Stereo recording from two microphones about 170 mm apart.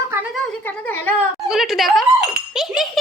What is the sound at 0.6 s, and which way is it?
Speech, 10° left (ahead or behind).